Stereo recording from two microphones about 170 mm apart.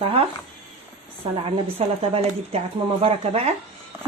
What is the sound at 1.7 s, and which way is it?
A woman's voice, 35° right (ahead or behind).